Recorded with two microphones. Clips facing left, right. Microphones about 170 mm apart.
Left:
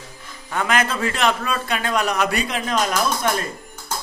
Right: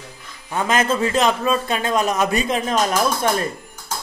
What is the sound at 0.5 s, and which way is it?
A man's voice, 20° right (ahead or behind).